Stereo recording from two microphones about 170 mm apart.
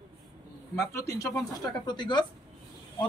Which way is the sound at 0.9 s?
15° left (ahead or behind).